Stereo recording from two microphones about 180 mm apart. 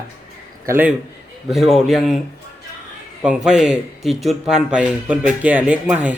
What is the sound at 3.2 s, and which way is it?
A man's voice, 5° right (ahead or behind).